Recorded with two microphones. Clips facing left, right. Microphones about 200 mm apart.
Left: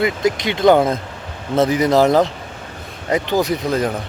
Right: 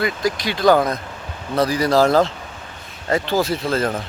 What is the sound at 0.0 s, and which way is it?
Speech, 20° left (ahead or behind).